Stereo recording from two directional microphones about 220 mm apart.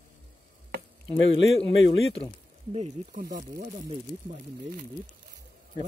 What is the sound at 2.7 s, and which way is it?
Speech, 30° right (ahead or behind).